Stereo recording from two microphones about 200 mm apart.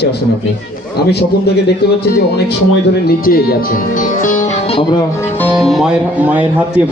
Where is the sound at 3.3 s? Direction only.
50° left (ahead or behind).